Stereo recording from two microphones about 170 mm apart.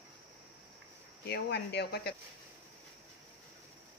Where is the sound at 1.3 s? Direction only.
75° left (ahead or behind).